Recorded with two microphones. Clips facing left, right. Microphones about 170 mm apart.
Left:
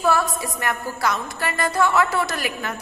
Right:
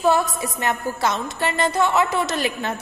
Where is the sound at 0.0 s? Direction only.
20° right (ahead or behind).